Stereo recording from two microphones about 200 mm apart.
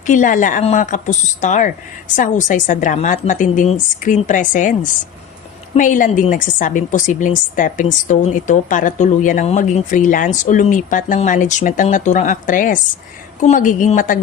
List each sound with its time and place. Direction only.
0.0 s speech: 40° left (ahead or behind)